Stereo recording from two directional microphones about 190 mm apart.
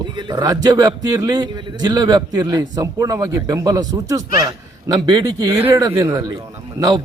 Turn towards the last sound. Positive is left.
turn(degrees=-20)  # may be behind; listen again after turning